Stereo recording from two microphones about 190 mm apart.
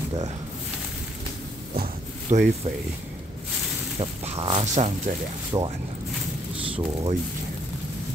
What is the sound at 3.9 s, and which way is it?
Speech, 30° right (ahead or behind).